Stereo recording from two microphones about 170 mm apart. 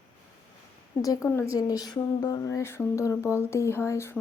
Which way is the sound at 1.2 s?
15° left (ahead or behind).